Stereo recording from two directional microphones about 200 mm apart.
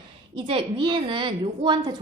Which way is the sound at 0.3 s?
25° right (ahead or behind).